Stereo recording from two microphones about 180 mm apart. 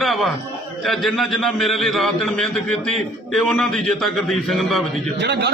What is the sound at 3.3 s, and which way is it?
A man's voice, centre (ahead or behind).